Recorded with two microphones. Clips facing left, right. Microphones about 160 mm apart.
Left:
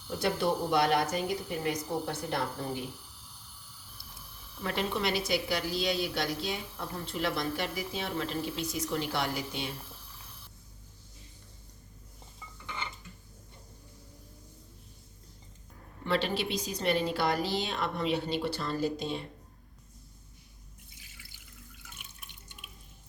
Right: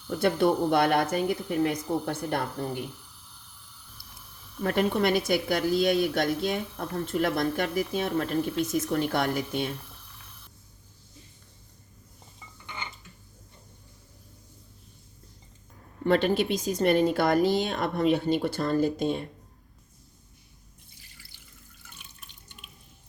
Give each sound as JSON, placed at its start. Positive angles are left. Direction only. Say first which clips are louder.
{"t": 0.2, "sound": "a woman's voice", "louder": "right 6 dB", "side_deg": -55}
{"t": 4.6, "sound": "a woman's voice", "louder": "right 7 dB", "side_deg": -50}
{"t": 16.0, "sound": "a woman's voice", "louder": "right 7 dB", "side_deg": -50}